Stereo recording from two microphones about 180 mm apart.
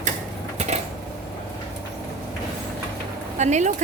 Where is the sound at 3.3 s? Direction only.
40° right (ahead or behind).